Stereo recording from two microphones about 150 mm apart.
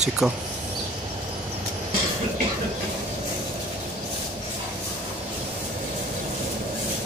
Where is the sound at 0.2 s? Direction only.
Centre (ahead or behind).